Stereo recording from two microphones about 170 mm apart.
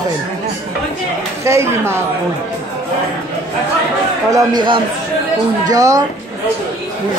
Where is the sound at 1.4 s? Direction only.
15° right (ahead or behind).